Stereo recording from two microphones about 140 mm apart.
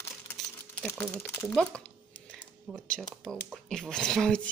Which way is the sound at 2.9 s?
5° left (ahead or behind).